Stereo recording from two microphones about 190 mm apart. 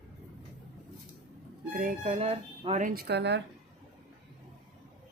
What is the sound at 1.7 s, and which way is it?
Speech, 45° right (ahead or behind).